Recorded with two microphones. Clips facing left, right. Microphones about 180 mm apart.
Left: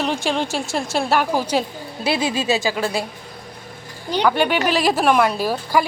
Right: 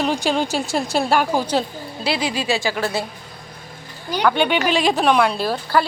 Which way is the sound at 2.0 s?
25° left (ahead or behind).